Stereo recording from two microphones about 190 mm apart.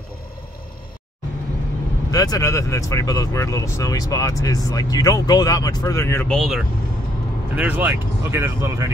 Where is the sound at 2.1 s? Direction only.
20° left (ahead or behind).